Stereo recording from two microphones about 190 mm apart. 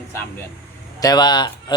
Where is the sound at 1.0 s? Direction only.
20° left (ahead or behind).